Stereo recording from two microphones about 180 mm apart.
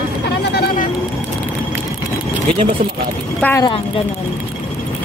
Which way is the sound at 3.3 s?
10° left (ahead or behind).